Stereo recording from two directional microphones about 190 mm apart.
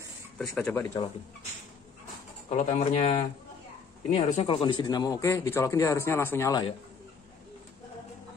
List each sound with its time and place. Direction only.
0.4 s speech: 10° left (ahead or behind)
2.5 s speech: 35° left (ahead or behind); by 6.7 s 15° left (ahead or behind)